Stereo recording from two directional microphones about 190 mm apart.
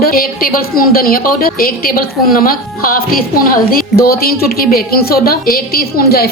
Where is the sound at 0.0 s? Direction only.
50° left (ahead or behind).